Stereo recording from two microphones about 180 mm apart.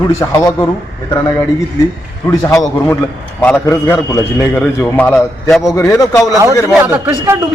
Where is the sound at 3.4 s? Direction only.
10° left (ahead or behind).